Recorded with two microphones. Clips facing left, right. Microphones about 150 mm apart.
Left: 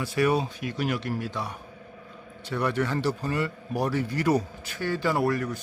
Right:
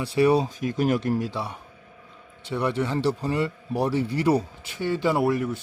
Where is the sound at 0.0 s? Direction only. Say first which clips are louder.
Right 4 dB; 30° right (ahead or behind).